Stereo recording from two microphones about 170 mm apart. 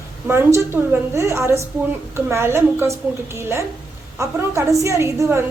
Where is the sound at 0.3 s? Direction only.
15° right (ahead or behind).